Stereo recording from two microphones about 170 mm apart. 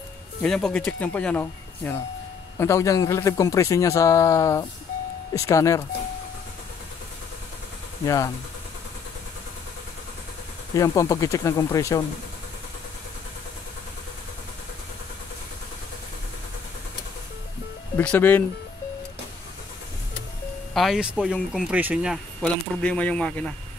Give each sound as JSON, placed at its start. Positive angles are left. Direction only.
{"t": 0.4, "sound": "a man's voice", "side_deg": 5}
{"t": 8.0, "sound": "a man's voice", "side_deg": 20}
{"t": 10.7, "sound": "a man's voice", "side_deg": 20}
{"t": 17.9, "sound": "speech", "side_deg": 10}
{"t": 20.7, "sound": "speech", "side_deg": 0}